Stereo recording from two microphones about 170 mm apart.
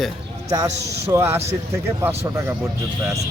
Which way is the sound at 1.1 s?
15° right (ahead or behind).